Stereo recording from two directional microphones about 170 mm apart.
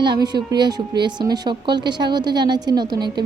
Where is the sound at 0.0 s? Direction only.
25° right (ahead or behind).